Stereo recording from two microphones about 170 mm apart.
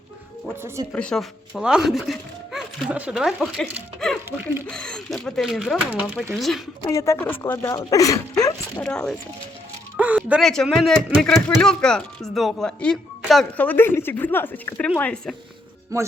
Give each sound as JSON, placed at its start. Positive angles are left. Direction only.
{"t": 0.4, "sound": "speech", "side_deg": -15}
{"t": 0.9, "sound": "speech", "side_deg": 5}
{"t": 6.8, "sound": "speech", "side_deg": 15}
{"t": 8.8, "sound": "speech", "side_deg": 5}
{"t": 10.0, "sound": "speech", "side_deg": -10}
{"t": 15.9, "sound": "speech", "side_deg": -20}